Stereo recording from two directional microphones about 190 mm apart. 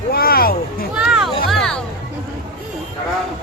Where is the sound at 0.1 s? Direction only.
50° left (ahead or behind).